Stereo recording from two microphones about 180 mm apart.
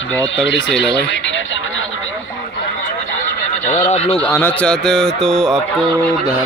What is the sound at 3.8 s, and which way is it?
Speech, 40° left (ahead or behind).